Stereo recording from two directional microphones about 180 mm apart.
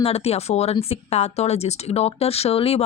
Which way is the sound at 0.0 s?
35° left (ahead or behind).